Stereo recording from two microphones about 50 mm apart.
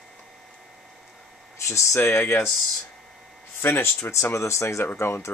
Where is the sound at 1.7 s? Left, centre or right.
Left.